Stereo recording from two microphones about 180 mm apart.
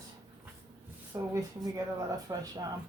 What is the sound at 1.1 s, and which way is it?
Speech, 20° right (ahead or behind).